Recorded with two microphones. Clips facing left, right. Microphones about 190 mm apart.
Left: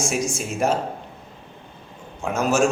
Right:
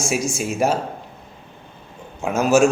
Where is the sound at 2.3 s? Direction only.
5° right (ahead or behind).